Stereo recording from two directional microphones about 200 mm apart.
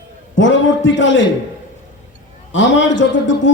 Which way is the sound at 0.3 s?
70° left (ahead or behind).